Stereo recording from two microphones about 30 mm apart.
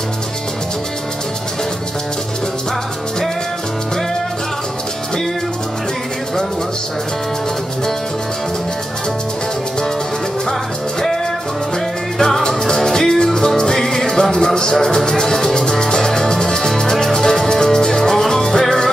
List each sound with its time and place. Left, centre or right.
12.4 s music: centre